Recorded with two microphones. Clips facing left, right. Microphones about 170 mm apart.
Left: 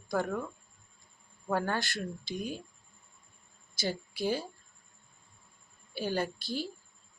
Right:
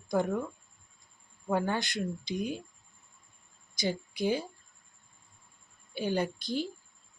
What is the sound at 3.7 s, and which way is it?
Speech, 15° right (ahead or behind).